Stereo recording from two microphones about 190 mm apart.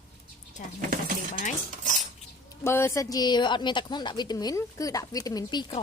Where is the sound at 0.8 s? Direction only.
45° right (ahead or behind).